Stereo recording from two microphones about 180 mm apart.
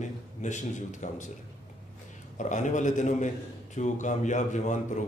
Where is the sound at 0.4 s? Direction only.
40° left (ahead or behind).